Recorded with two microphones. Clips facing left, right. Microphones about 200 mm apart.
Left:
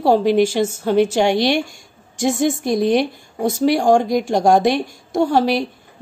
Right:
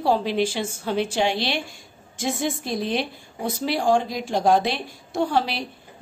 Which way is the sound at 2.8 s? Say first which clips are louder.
Left 9 dB; 50° left (ahead or behind).